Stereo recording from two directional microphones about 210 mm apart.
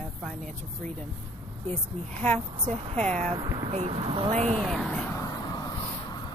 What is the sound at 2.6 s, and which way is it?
Speech, 30° right (ahead or behind).